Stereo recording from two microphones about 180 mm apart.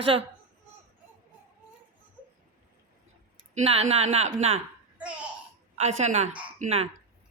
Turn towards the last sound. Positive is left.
turn(degrees=-40)  # may be behind; listen again after turning